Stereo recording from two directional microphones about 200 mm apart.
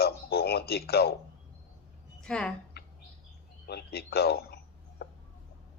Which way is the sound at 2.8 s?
55° left (ahead or behind).